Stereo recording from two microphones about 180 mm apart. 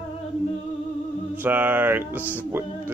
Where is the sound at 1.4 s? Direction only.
10° right (ahead or behind).